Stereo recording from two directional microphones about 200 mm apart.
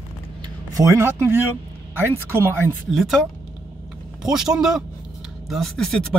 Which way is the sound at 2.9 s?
Centre (ahead or behind).